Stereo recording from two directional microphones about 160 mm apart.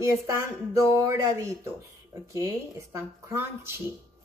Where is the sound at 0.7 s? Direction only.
15° right (ahead or behind).